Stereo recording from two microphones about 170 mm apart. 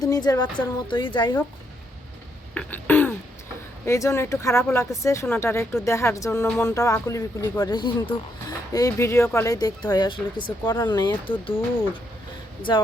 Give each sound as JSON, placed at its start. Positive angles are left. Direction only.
{"t": 0.0, "sound": "speech", "side_deg": 20}
{"t": 2.6, "sound": "a sound", "side_deg": 10}
{"t": 3.8, "sound": "speech", "side_deg": 15}
{"t": 10.6, "sound": "speech", "side_deg": 15}
{"t": 10.8, "sound": "speech", "side_deg": 25}